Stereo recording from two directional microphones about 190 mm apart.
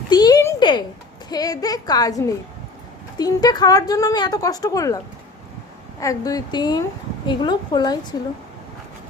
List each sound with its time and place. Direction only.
0.1 s a sound: 20° left (ahead or behind)
1.3 s speech: 20° left (ahead or behind)
6.0 s speech: 20° left (ahead or behind)